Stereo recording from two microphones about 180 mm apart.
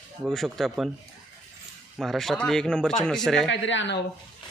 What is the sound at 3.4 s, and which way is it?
Speech, 90° left.